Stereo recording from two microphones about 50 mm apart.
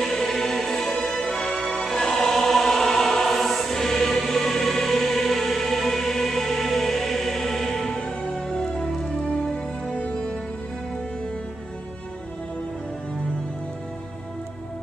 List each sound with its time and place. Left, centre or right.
0.0 s music: centre
9.8 s music: left